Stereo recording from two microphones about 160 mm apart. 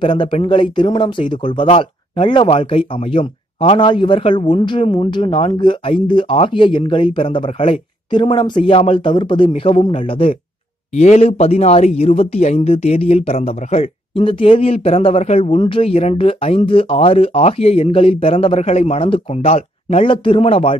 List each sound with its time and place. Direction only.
0.0 s speech: 30° left (ahead or behind)